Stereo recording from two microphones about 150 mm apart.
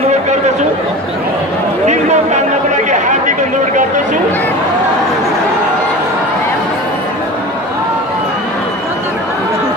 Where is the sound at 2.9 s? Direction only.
55° right (ahead or behind).